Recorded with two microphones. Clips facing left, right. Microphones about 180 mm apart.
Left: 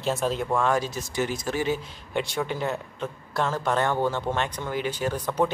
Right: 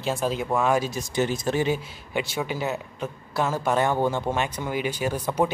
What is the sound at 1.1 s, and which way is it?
Speech, 25° right (ahead or behind).